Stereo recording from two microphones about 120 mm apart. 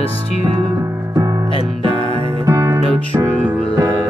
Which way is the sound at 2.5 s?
25° right (ahead or behind).